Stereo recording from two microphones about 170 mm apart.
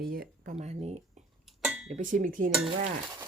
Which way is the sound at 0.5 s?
40° right (ahead or behind).